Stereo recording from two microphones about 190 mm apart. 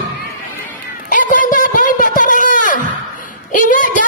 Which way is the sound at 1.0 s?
45° left (ahead or behind).